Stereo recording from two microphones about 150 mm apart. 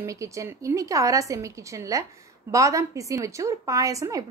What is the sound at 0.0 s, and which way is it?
A woman's voice, 20° right (ahead or behind).